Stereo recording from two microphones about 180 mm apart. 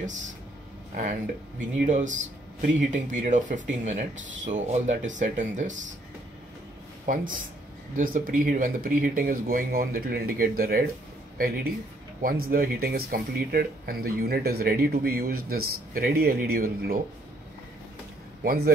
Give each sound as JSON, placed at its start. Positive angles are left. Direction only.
{"t": 0.9, "sound": "speech", "side_deg": -45}
{"t": 7.1, "sound": "speech", "side_deg": -50}